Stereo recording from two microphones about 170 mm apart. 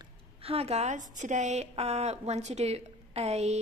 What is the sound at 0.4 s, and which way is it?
A woman's voice, 35° right (ahead or behind).